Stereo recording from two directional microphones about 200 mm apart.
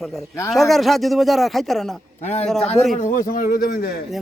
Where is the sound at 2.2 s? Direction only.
35° left (ahead or behind).